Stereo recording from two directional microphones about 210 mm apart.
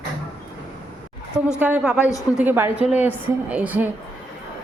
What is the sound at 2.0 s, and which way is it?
Speech, 15° left (ahead or behind).